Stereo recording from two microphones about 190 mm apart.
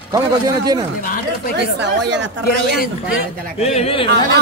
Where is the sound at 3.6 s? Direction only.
35° left (ahead or behind).